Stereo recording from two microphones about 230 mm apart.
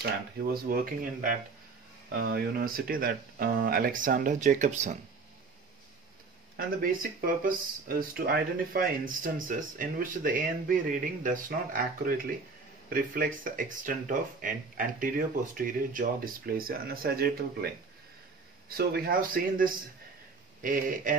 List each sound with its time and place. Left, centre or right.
0.0 s speech: right
6.5 s speech: right
18.8 s speech: right